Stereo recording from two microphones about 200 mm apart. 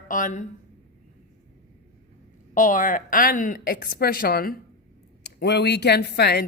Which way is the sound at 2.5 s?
40° left (ahead or behind).